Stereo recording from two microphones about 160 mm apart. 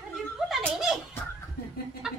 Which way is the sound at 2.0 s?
5° right (ahead or behind).